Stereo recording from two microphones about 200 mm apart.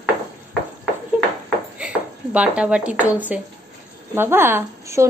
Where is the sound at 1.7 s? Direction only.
5° right (ahead or behind).